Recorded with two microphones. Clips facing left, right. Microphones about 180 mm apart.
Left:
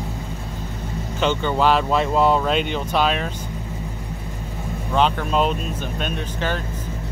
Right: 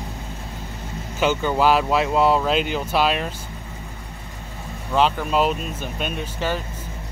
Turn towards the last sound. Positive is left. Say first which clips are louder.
# even
turn(degrees=-5)  # may be behind; listen again after turning